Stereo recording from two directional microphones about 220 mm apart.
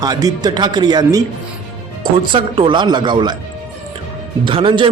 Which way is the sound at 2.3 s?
20° right (ahead or behind).